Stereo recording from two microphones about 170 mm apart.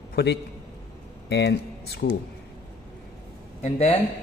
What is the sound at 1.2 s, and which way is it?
Speech, 90° left.